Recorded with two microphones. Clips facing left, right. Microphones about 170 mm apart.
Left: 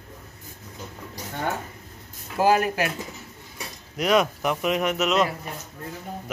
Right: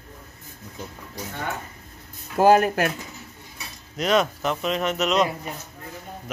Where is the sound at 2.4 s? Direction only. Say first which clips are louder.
Right 4 dB; 50° right (ahead or behind).